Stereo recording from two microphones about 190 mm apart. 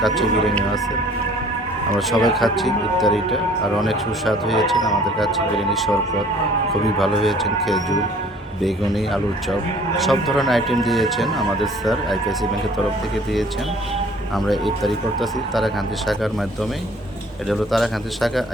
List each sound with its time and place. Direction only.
0.0 s speech: centre (ahead or behind)
2.0 s speech: centre (ahead or behind)
7.2 s speech: centre (ahead or behind)
14.3 s speech: centre (ahead or behind)
17.5 s speech: centre (ahead or behind)